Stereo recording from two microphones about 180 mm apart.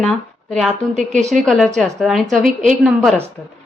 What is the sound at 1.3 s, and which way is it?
A woman's voice, centre (ahead or behind).